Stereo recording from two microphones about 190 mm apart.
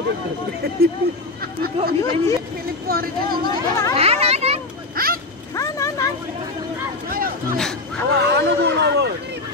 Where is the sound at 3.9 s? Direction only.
30° right (ahead or behind).